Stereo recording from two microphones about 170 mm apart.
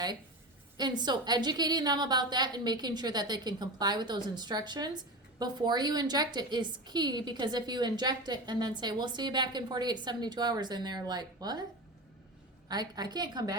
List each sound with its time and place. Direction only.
0.8 s a woman's voice: 25° right (ahead or behind)
12.6 s a woman's voice: 25° right (ahead or behind)